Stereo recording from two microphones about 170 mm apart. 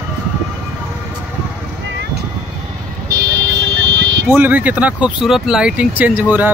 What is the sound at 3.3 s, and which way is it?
Car alarm, 90° right.